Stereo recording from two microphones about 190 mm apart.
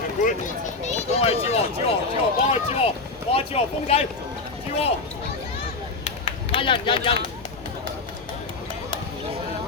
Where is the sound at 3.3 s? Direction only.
30° left (ahead or behind).